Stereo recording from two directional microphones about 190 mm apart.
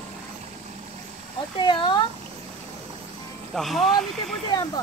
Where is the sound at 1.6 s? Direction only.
25° left (ahead or behind).